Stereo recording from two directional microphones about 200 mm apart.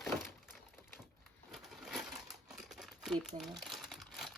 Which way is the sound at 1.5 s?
Centre (ahead or behind).